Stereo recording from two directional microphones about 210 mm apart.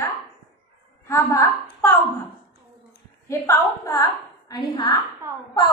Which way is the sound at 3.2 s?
15° left (ahead or behind).